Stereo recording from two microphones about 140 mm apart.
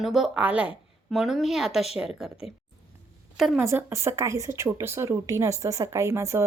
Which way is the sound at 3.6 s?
20° right (ahead or behind).